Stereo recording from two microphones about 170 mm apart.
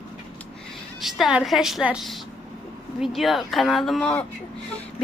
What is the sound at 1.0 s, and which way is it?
A man's voice, centre (ahead or behind).